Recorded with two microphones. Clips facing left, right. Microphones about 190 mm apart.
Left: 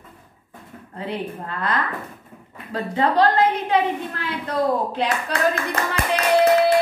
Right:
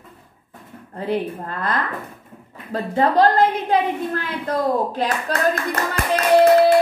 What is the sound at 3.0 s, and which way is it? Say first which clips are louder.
Speech: right 2 dB; 40° right (ahead or behind).